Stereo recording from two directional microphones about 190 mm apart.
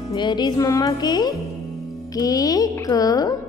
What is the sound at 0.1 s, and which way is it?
A woman's voice, 20° left (ahead or behind).